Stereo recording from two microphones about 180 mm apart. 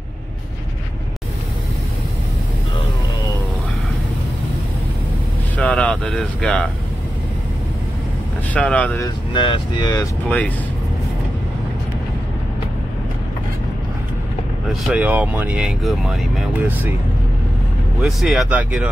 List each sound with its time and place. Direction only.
5.6 s speech: 5° left (ahead or behind)
8.5 s speech: 5° left (ahead or behind)
9.0 s speech: 25° left (ahead or behind)
10.2 s speech: 5° left (ahead or behind)
14.7 s speech: 5° right (ahead or behind)
18.0 s speech: centre (ahead or behind)